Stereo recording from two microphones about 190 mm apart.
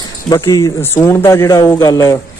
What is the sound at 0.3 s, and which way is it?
A man's voice, 15° left (ahead or behind).